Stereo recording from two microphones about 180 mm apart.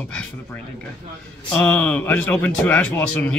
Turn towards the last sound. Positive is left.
turn(degrees=10)  # may be behind; listen again after turning